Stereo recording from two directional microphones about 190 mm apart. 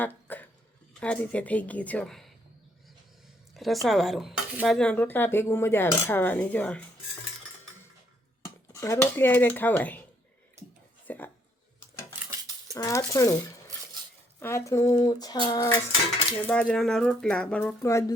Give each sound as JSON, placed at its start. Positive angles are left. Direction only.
{"t": 0.0, "sound": "a sound", "side_deg": 10}
{"t": 0.9, "sound": "speech", "side_deg": 5}
{"t": 3.5, "sound": "speech", "side_deg": 0}
{"t": 8.7, "sound": "speech", "side_deg": 15}
{"t": 11.0, "sound": "a sound", "side_deg": 10}
{"t": 12.7, "sound": "speech", "side_deg": 20}
{"t": 14.3, "sound": "speech", "side_deg": 15}
{"t": 16.4, "sound": "speech", "side_deg": 5}